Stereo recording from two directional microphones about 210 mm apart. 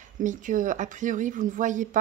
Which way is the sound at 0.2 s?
35° right (ahead or behind).